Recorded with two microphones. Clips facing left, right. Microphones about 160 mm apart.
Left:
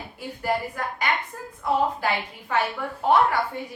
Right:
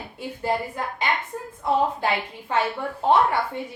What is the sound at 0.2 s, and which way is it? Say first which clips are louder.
Speech: right 1 dB; 25° right (ahead or behind).